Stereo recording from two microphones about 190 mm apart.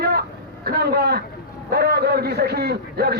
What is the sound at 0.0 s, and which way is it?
Vehicle, 55° right (ahead or behind).